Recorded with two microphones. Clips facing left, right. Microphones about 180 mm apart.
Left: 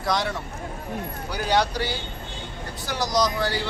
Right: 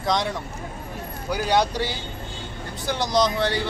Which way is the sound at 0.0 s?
20° right (ahead or behind).